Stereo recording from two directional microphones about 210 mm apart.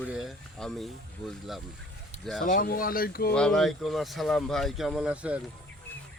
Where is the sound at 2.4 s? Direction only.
40° left (ahead or behind).